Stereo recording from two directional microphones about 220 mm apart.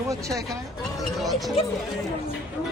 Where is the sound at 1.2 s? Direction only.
Centre (ahead or behind).